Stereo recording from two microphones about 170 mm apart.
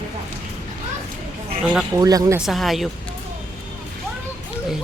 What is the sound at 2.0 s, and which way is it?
Speech, 20° right (ahead or behind).